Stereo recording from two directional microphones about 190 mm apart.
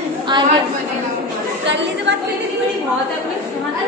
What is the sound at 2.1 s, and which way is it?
Speech, 65° right (ahead or behind).